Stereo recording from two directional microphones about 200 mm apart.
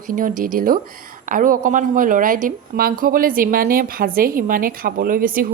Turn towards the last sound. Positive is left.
turn(degrees=-45)  # may be behind; listen again after turning